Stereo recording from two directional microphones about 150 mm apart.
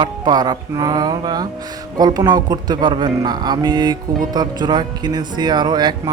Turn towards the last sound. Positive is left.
turn(degrees=-30)  # may be behind; listen again after turning